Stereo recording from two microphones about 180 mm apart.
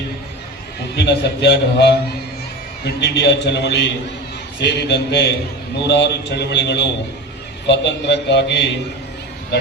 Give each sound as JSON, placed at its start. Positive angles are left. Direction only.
{"t": 0.9, "sound": "a man's voice", "side_deg": 70}